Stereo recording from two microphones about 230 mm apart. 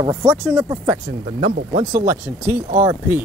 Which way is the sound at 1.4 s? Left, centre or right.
Right.